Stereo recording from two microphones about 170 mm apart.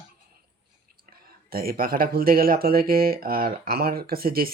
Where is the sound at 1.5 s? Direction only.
60° right (ahead or behind).